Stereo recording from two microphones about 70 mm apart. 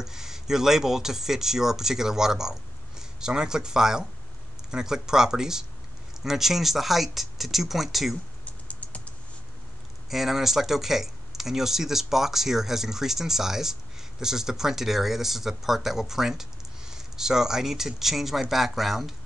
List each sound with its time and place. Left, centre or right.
0.0 s speech: centre
8.5 s typing: centre
10.0 s speech: centre